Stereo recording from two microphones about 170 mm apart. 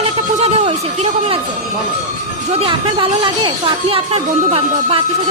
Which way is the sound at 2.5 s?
30° right (ahead or behind).